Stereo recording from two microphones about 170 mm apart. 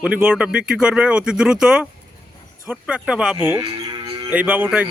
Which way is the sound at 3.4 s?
20° right (ahead or behind).